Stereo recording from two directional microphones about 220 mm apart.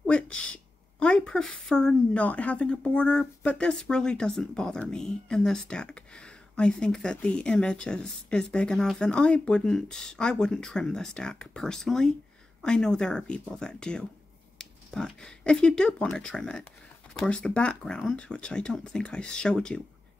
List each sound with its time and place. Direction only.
0.0 s speech: 5° left (ahead or behind)